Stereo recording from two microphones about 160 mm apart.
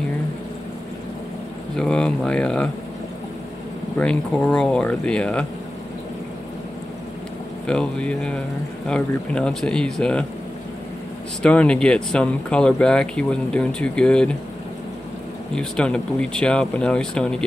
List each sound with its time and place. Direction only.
1.8 s speech: 5° left (ahead or behind)
4.0 s speech: 5° left (ahead or behind)
7.6 s speech: 5° left (ahead or behind)
11.4 s speech: 5° left (ahead or behind)
15.5 s speech: 5° left (ahead or behind)